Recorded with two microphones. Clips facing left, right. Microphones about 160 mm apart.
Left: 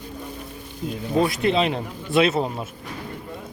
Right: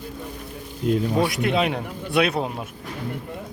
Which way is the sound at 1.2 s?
5° right (ahead or behind).